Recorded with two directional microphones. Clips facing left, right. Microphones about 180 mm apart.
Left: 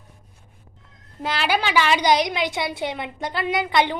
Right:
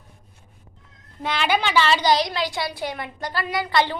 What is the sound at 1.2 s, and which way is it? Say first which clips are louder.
A woman's voice: even; 5° left (ahead or behind).